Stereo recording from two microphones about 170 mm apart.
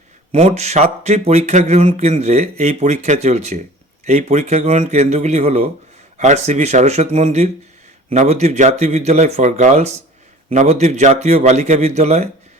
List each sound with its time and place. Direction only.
0.3 s speech: 35° right (ahead or behind)